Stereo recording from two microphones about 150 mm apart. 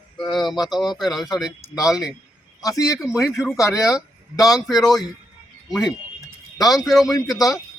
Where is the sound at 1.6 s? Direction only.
20° left (ahead or behind).